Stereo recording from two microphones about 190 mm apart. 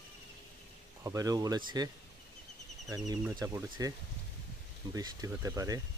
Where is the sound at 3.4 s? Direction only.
20° right (ahead or behind).